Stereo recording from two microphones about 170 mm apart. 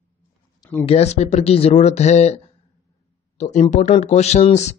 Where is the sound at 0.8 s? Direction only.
35° left (ahead or behind).